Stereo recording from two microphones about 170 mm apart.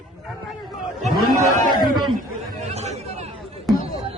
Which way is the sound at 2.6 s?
40° right (ahead or behind).